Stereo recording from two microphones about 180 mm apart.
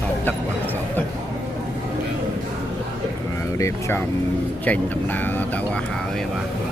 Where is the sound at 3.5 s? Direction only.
15° left (ahead or behind).